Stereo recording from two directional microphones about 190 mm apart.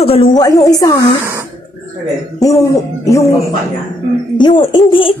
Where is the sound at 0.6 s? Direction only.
20° left (ahead or behind).